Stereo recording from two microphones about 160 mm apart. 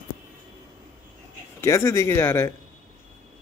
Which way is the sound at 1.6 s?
20° left (ahead or behind).